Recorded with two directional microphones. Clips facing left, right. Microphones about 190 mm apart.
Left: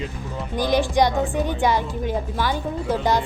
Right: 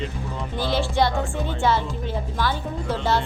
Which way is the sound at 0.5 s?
15° left (ahead or behind).